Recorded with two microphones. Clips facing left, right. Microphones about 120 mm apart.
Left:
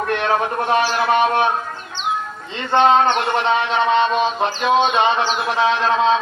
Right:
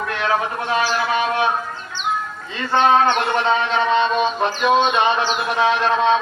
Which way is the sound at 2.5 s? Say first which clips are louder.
Left 1 dB; 25° left (ahead or behind).